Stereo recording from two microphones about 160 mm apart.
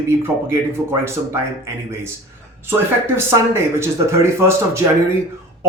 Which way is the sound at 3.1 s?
15° right (ahead or behind).